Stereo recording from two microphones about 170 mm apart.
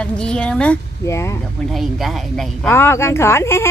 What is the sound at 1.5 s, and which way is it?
A woman's voice, centre (ahead or behind).